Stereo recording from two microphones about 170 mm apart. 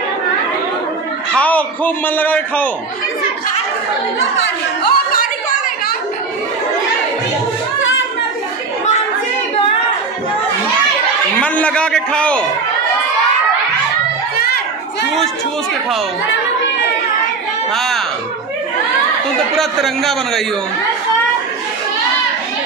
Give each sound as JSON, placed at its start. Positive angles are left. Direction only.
{"t": 1.3, "sound": "a man's voice", "side_deg": 10}
{"t": 4.4, "sound": "speech", "side_deg": 65}
{"t": 11.4, "sound": "a man's voice", "side_deg": 5}
{"t": 14.3, "sound": "children playing", "side_deg": 65}
{"t": 17.7, "sound": "a sound", "side_deg": 0}
{"t": 19.5, "sound": "a man's voice", "side_deg": 0}